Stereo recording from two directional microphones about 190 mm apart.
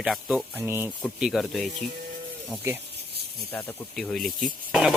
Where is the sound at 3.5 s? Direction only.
5° left (ahead or behind).